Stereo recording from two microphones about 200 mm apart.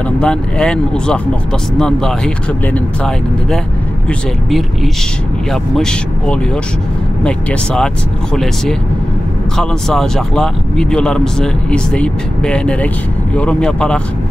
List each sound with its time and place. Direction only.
0.2 s speech: 5° left (ahead or behind)
5.5 s speech: 5° left (ahead or behind)